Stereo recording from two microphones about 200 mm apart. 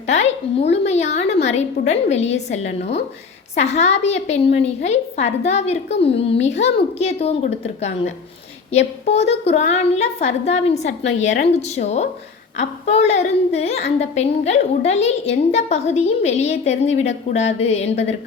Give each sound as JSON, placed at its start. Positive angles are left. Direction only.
{"t": 0.1, "sound": "a woman's voice", "side_deg": 35}